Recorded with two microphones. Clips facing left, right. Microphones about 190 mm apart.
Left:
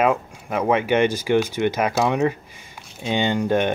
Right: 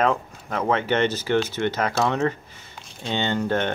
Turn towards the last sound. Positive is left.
turn(degrees=15)  # may be behind; listen again after turning